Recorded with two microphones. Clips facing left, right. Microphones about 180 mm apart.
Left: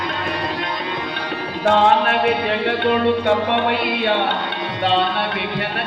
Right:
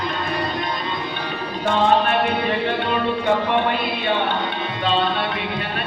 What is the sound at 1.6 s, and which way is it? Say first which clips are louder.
Music: left 3 dB; 75° left (ahead or behind).